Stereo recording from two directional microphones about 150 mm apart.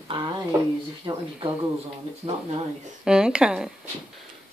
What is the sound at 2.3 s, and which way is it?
Speech, 45° right (ahead or behind).